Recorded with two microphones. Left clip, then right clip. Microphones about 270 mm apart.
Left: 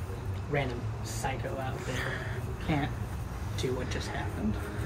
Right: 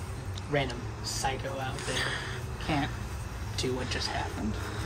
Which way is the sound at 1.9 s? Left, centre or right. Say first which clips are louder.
Right 4 dB; centre.